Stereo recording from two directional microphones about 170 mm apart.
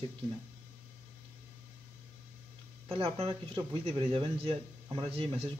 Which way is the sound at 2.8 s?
35° right (ahead or behind).